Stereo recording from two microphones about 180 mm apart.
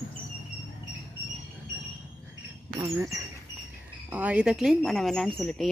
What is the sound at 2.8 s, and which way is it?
Speech, 15° right (ahead or behind).